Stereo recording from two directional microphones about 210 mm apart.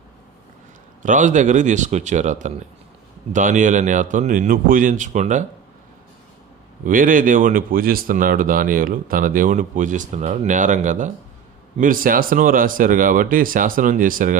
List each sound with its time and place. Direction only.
1.0 s speech: 35° right (ahead or behind)
6.8 s speech: 40° right (ahead or behind)